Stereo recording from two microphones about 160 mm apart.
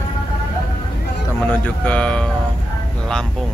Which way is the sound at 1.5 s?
5° left (ahead or behind).